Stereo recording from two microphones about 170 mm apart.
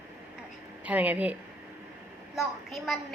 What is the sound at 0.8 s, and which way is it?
Speech, 10° right (ahead or behind).